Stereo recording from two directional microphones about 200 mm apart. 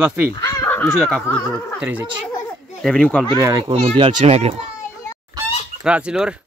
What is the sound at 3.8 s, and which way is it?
Speech, 30° right (ahead or behind).